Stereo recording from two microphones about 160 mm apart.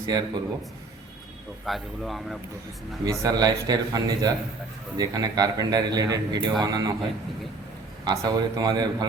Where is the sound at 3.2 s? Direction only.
25° right (ahead or behind).